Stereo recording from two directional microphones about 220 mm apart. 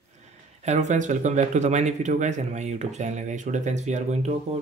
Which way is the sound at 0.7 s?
30° right (ahead or behind).